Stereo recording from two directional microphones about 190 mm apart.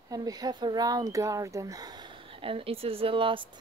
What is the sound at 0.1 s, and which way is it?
Speech, 20° right (ahead or behind).